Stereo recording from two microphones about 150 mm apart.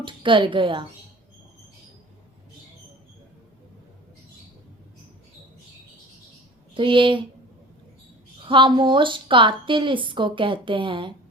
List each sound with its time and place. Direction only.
0.0 s a woman's voice: 35° right (ahead or behind)
6.7 s a woman's voice: 35° right (ahead or behind)
8.4 s a woman's voice: 35° right (ahead or behind)